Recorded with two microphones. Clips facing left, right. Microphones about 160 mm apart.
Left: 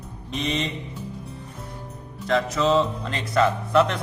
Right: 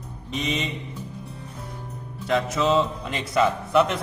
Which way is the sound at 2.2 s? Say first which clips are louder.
Left 1 dB; 5° right (ahead or behind).